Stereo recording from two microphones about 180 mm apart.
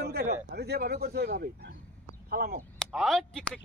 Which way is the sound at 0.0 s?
65° right (ahead or behind).